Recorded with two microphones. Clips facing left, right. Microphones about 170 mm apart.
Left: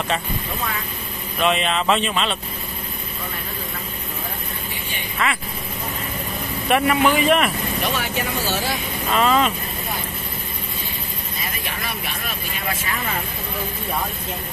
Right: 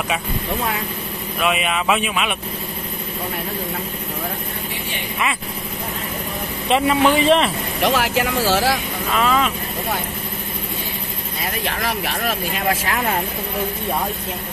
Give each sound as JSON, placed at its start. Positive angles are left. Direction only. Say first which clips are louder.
{"t": 1.4, "sound": "speech", "louder": "left 1 dB", "side_deg": -5}
{"t": 5.2, "sound": "speech", "louder": "even", "side_deg": -15}
{"t": 6.7, "sound": "speech", "louder": "right 2 dB", "side_deg": -25}
{"t": 7.8, "sound": "speech", "louder": "right 8 dB", "side_deg": -90}
{"t": 9.1, "sound": "speech", "louder": "left 1 dB", "side_deg": 0}
{"t": 11.4, "sound": "speech", "louder": "right 7 dB", "side_deg": -75}